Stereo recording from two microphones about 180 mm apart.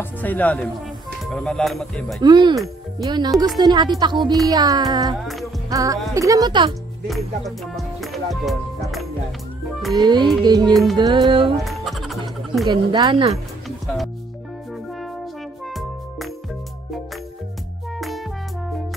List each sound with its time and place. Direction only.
0.0 s speech: 10° left (ahead or behind)
2.2 s speech: 25° right (ahead or behind)
7.1 s speech: centre (ahead or behind)
9.9 s speech: 25° right (ahead or behind)
10.7 s speech: centre (ahead or behind)
11.0 s speech: 25° right (ahead or behind)
11.6 s music: centre (ahead or behind)
12.6 s speech: 25° right (ahead or behind)
15.6 s music: centre (ahead or behind)
17.9 s music: centre (ahead or behind)